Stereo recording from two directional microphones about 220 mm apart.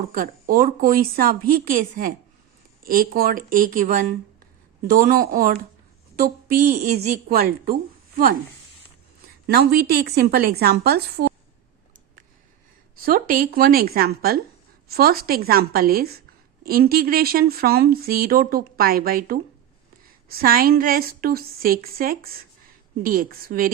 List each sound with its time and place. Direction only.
0.1 s a woman's voice: 40° right (ahead or behind)
9.5 s speech: 45° right (ahead or behind)
13.0 s a woman's voice: 40° right (ahead or behind)